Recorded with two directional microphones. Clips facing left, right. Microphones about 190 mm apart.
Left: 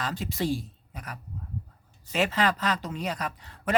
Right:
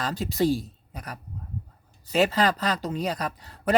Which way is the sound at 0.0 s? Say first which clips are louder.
Right 5 dB; 40° right (ahead or behind).